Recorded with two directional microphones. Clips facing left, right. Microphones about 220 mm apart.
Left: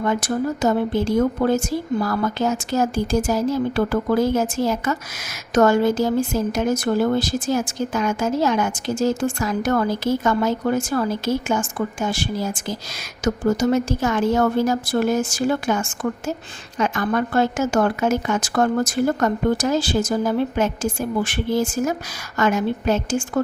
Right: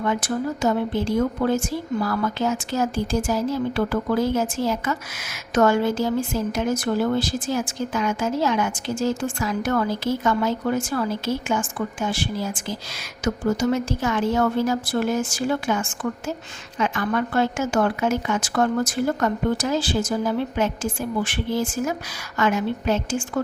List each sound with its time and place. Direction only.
0.0 s a woman's voice: 40° left (ahead or behind)